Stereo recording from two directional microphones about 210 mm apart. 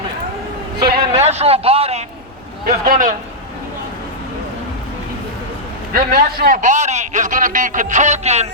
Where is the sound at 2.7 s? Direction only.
40° right (ahead or behind).